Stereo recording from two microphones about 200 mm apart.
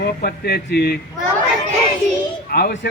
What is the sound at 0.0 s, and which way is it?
Speech, 50° left (ahead or behind).